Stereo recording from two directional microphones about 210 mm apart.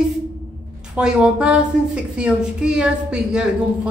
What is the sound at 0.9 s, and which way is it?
A woman's voice, 5° right (ahead or behind).